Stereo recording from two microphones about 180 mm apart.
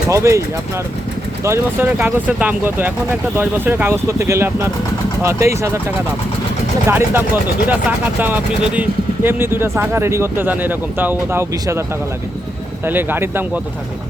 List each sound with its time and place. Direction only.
0.1 s speech: 15° right (ahead or behind)
1.5 s speech: 10° right (ahead or behind)
6.8 s speech: 10° right (ahead or behind)
12.8 s speech: 10° right (ahead or behind)